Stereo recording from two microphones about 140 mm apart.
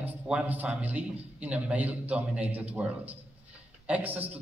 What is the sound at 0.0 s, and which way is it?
A man's voice, 10° right (ahead or behind).